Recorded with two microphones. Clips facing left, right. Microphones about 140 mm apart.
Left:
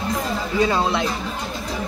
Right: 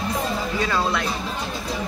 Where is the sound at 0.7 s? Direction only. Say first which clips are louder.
Left 3 dB; 25° left (ahead or behind).